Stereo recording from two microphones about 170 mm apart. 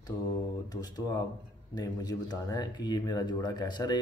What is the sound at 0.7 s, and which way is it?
Speech, 20° left (ahead or behind).